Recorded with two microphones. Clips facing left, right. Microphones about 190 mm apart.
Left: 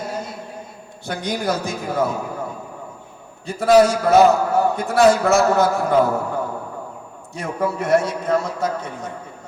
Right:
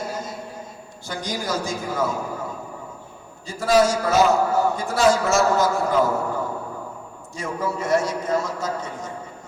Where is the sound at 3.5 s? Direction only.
60° left (ahead or behind).